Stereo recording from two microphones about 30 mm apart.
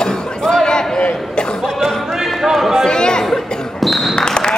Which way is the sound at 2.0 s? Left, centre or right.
Centre.